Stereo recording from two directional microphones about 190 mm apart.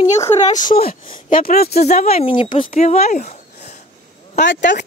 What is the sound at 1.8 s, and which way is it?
Speech, 35° left (ahead or behind).